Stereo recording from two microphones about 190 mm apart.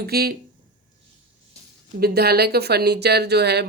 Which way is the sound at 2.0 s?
55° right (ahead or behind).